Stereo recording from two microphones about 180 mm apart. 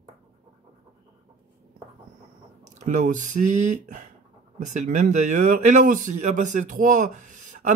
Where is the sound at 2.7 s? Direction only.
45° right (ahead or behind).